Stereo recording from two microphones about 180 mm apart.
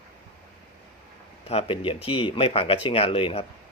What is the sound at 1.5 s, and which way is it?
Speech, 35° left (ahead or behind).